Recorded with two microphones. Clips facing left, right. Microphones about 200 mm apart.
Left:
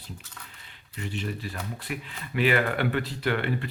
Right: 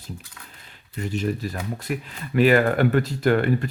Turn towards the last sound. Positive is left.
turn(degrees=-45)  # may be behind; listen again after turning